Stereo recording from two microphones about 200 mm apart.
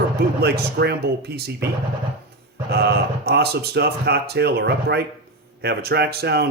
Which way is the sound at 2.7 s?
50° right (ahead or behind).